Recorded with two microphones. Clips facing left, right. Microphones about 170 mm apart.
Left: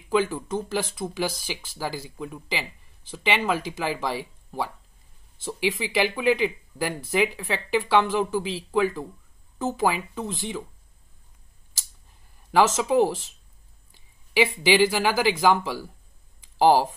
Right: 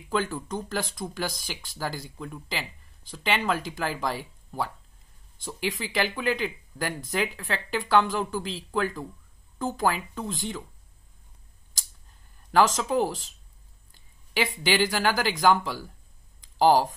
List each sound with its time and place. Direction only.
0.1 s speech: 10° left (ahead or behind)
12.4 s speech: 5° left (ahead or behind)
14.6 s speech: 5° left (ahead or behind)
16.3 s a sound: 10° left (ahead or behind)